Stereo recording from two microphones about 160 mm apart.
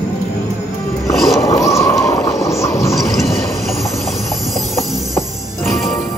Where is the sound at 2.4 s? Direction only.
20° left (ahead or behind).